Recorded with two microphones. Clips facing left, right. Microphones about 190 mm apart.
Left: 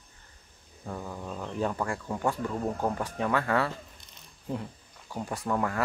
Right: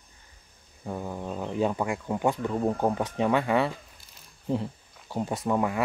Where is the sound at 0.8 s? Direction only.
20° right (ahead or behind).